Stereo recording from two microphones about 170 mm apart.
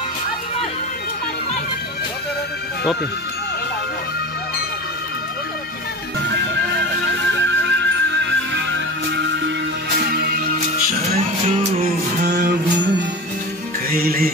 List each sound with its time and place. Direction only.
6.2 s music: 90° right
10.1 s music: 65° right (ahead or behind)
11.0 s music: 35° right (ahead or behind)
12.3 s music: 80° right
13.8 s music: 60° right (ahead or behind)